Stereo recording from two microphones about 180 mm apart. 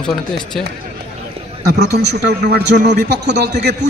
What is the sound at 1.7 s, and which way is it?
A man's voice, 65° right (ahead or behind).